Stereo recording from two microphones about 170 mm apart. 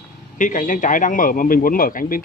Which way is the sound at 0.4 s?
50° left (ahead or behind).